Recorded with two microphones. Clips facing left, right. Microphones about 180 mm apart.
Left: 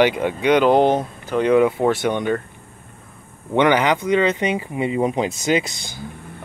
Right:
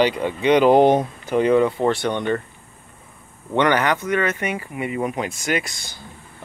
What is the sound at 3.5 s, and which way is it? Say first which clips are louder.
Speech: left 2 dB; 15° left (ahead or behind).